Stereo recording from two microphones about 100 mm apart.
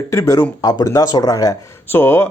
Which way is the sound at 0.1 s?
35° left (ahead or behind).